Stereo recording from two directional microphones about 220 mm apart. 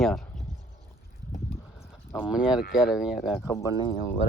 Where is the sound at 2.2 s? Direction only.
5° right (ahead or behind).